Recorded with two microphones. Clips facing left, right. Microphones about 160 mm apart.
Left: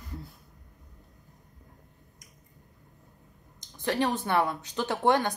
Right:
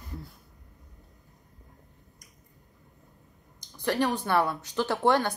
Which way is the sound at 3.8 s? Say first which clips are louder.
Right 1 dB; 20° left (ahead or behind).